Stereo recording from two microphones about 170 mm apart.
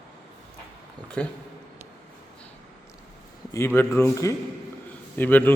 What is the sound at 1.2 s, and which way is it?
Speech, 5° left (ahead or behind).